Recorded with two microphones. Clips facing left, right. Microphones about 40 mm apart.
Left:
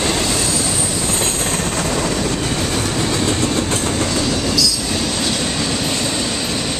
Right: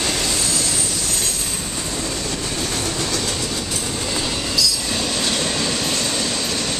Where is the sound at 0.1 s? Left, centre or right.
Left.